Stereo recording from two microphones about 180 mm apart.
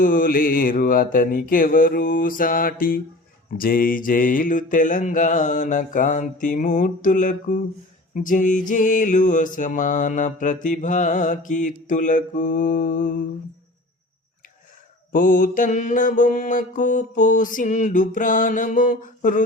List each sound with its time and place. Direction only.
0.0 s mantra: 50° left (ahead or behind)
15.1 s mantra: 50° left (ahead or behind)